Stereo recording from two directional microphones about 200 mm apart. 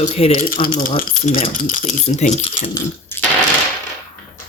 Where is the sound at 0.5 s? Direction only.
45° left (ahead or behind).